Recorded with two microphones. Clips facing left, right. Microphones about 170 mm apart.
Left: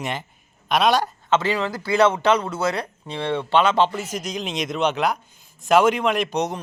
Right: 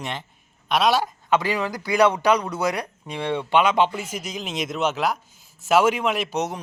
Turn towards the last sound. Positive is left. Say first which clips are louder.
# left 2 dB
turn(degrees=-5)  # may be behind; listen again after turning